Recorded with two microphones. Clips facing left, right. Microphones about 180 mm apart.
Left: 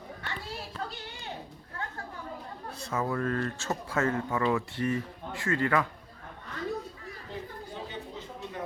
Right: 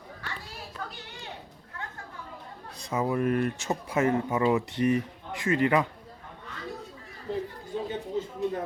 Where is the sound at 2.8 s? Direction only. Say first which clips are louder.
Right 4 dB; 15° right (ahead or behind).